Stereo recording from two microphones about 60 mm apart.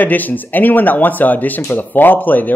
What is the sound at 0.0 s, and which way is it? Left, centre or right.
Speech, left.